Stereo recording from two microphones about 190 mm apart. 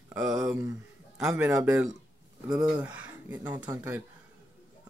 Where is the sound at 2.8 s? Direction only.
10° right (ahead or behind).